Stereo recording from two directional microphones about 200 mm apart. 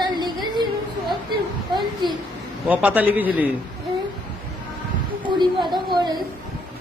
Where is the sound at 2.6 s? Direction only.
5° right (ahead or behind).